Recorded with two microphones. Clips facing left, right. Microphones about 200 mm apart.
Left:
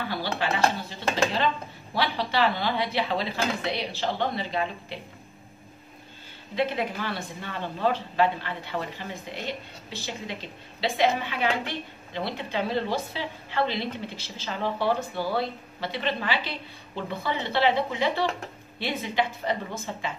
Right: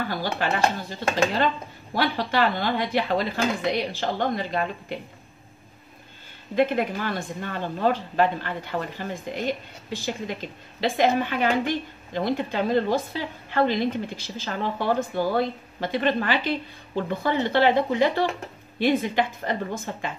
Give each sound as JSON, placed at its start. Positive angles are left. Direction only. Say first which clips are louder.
{"t": 0.4, "sound": "a woman's voice", "louder": "right 1 dB", "side_deg": -45}
{"t": 6.5, "sound": "a woman's voice", "louder": "right 5 dB", "side_deg": -50}